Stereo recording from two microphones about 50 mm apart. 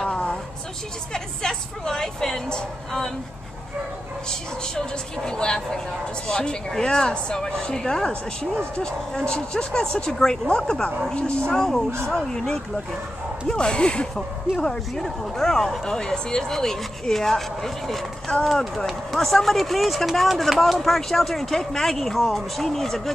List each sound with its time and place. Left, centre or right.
0.0 s vehicle: centre
1.1 s music: centre
4.3 s speech: centre